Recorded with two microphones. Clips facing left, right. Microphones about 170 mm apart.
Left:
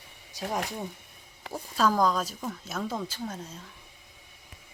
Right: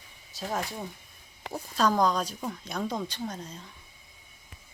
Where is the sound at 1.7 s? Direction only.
5° left (ahead or behind).